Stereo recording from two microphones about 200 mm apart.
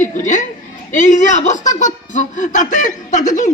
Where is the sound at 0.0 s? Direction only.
35° left (ahead or behind).